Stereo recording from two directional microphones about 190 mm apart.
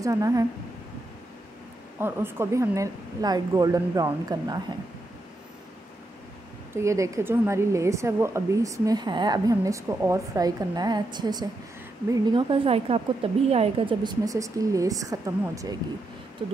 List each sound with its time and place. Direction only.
0.0 s speech: 15° right (ahead or behind)
2.0 s speech: 10° right (ahead or behind)
6.7 s a woman's voice: 15° right (ahead or behind)